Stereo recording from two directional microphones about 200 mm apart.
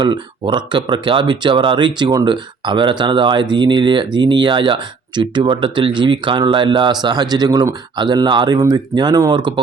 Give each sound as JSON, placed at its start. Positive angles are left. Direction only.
{"t": 0.0, "sound": "speech", "side_deg": -20}